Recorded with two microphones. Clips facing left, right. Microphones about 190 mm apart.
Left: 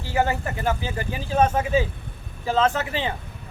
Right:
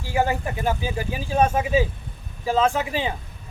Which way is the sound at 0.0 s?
15° right (ahead or behind).